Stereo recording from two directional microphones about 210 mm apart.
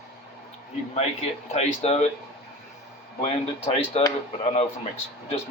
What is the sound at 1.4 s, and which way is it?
Speech, 30° left (ahead or behind).